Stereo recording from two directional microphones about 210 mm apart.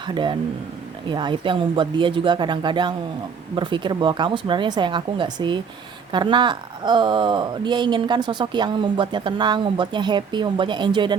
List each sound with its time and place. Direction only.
0.0 s speech: 20° right (ahead or behind)